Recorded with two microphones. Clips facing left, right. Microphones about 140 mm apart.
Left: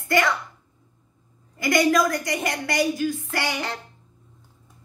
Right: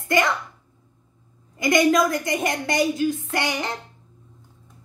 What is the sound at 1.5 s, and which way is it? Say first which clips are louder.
A woman's voice: right 2 dB; 20° right (ahead or behind).